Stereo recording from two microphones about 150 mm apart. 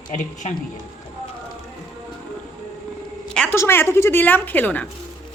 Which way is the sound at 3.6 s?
15° left (ahead or behind).